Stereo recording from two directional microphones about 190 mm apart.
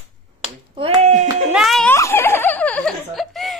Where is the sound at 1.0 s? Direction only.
35° right (ahead or behind).